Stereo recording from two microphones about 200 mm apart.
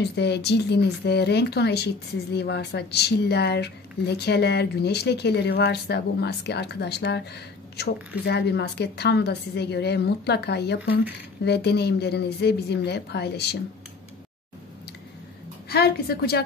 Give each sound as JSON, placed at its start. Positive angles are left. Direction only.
{"t": 0.0, "sound": "speech", "side_deg": 55}
{"t": 15.7, "sound": "a woman's voice", "side_deg": 50}